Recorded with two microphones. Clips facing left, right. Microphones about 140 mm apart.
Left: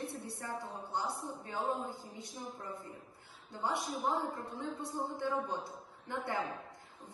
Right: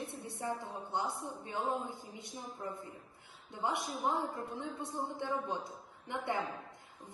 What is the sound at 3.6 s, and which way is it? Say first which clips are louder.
Speech: even; 25° right (ahead or behind).